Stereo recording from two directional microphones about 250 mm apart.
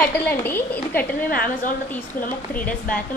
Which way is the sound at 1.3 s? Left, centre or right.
Left.